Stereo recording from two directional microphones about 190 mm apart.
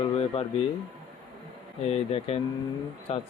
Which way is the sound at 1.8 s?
35° left (ahead or behind).